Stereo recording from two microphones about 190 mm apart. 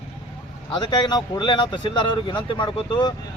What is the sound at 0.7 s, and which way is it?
Speech, 25° left (ahead or behind).